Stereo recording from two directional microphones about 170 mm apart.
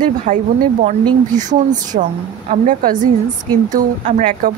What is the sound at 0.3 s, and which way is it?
Speech, 50° right (ahead or behind).